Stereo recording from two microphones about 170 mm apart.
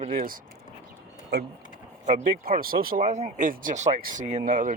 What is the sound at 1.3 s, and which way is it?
Speech, 70° right (ahead or behind).